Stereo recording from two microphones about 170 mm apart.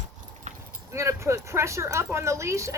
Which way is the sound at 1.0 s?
15° right (ahead or behind).